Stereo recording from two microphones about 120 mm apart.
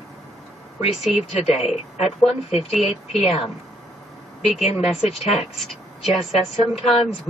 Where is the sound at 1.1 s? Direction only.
65° left (ahead or behind).